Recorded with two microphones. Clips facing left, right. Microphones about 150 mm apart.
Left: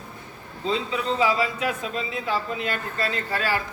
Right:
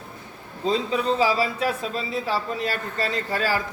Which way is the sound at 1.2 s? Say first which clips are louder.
Right 1 dB; 35° right (ahead or behind).